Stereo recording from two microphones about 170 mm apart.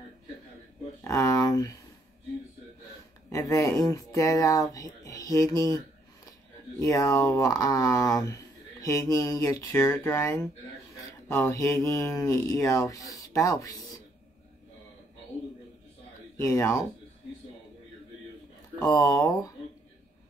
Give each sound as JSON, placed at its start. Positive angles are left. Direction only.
{"t": 1.0, "sound": "speech", "side_deg": 20}
{"t": 3.3, "sound": "speech", "side_deg": 20}
{"t": 6.8, "sound": "speech", "side_deg": 20}
{"t": 16.3, "sound": "speech", "side_deg": 15}
{"t": 18.8, "sound": "speech", "side_deg": 20}